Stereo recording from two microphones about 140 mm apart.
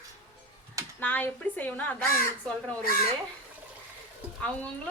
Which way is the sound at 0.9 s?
15° left (ahead or behind).